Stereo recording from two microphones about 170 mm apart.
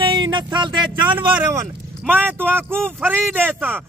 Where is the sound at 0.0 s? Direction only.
30° right (ahead or behind).